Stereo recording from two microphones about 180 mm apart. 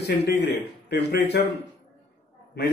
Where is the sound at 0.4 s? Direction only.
70° left (ahead or behind).